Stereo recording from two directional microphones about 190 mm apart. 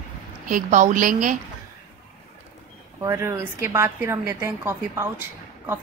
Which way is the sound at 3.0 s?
15° right (ahead or behind).